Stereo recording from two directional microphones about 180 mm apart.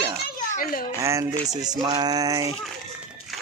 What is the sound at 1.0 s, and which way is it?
Speech, 15° right (ahead or behind).